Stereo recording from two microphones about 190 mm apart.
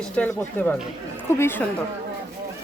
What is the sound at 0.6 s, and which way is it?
Speech, 10° left (ahead or behind).